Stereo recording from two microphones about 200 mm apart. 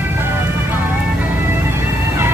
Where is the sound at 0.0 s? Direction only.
10° right (ahead or behind).